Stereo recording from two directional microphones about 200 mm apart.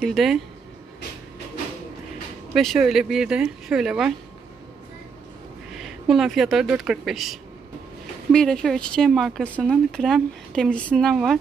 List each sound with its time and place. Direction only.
0.0 s speech: centre (ahead or behind)
2.5 s speech: centre (ahead or behind)
5.7 s speech: centre (ahead or behind)